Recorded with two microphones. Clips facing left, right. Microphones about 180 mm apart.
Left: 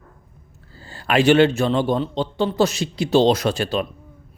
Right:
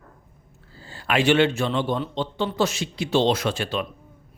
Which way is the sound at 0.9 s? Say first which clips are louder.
Left 4 dB; 40° left (ahead or behind).